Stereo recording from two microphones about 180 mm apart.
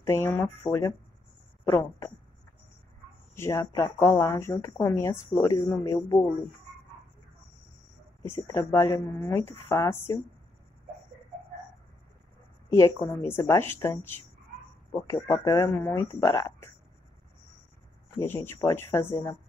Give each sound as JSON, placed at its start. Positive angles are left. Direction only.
{"t": 0.0, "sound": "speech", "side_deg": 15}
{"t": 3.3, "sound": "speech", "side_deg": 15}
{"t": 8.2, "sound": "speech", "side_deg": 15}
{"t": 12.6, "sound": "speech", "side_deg": 15}
{"t": 18.2, "sound": "speech", "side_deg": 10}